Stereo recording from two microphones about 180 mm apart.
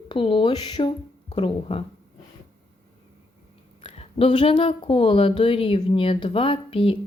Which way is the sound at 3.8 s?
30° left (ahead or behind).